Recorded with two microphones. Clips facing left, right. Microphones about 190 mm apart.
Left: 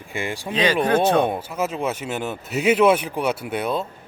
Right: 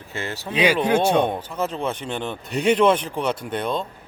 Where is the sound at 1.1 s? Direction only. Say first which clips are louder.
Left 1 dB; 10° left (ahead or behind).